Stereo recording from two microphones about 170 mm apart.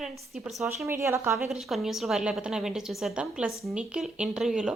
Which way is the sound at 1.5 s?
Centre (ahead or behind).